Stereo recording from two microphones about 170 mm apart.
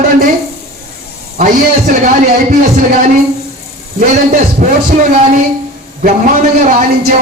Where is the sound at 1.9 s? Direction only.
45° right (ahead or behind).